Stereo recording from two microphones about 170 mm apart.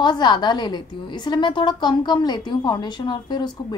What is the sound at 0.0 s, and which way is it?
A woman's voice, 25° left (ahead or behind).